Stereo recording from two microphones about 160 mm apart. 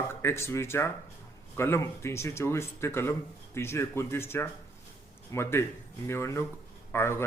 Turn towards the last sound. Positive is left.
turn(degrees=15)  # may be behind; listen again after turning